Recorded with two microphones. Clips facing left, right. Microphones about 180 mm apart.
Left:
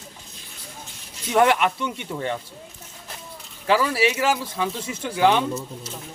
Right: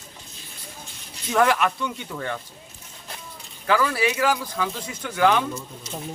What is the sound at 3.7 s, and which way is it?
A man's voice, 25° left (ahead or behind).